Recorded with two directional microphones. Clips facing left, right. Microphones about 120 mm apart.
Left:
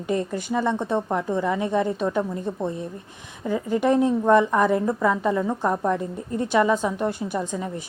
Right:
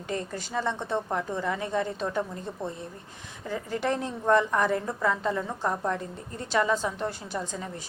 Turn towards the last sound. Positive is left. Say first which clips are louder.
# left 7 dB
turn(degrees=15)  # may be behind; listen again after turning